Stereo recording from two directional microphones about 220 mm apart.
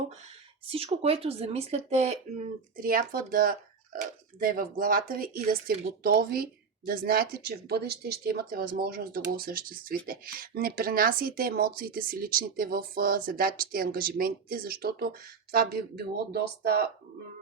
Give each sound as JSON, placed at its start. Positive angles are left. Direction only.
{"t": 0.7, "sound": "speech", "side_deg": -25}
{"t": 2.8, "sound": "speech", "side_deg": -40}